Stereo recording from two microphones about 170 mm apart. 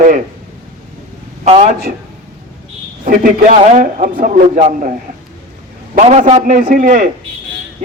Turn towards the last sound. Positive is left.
turn(degrees=-50)  # may be behind; listen again after turning